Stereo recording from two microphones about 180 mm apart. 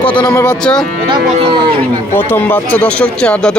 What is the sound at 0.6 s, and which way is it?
Speech, 5° left (ahead or behind).